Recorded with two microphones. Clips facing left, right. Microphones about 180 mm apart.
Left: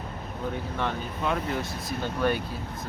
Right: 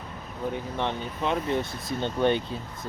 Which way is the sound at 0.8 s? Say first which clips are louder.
Right 1 dB; 25° right (ahead or behind).